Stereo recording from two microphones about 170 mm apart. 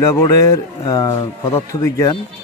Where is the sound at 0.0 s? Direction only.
20° left (ahead or behind).